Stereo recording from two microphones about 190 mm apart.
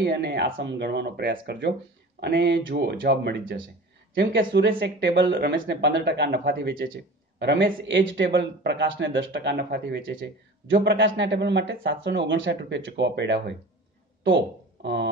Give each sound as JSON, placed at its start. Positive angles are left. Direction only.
{"t": 0.0, "sound": "a man's voice", "side_deg": -55}